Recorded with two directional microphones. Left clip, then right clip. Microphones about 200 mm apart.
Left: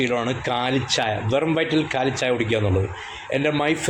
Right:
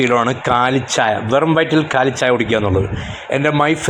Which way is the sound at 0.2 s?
20° right (ahead or behind).